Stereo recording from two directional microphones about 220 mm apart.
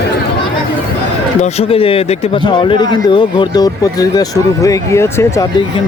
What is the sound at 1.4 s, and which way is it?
Speech, 25° left (ahead or behind).